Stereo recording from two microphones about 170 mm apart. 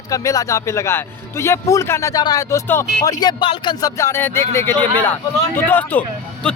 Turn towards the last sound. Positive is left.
turn(degrees=5)  # may be behind; listen again after turning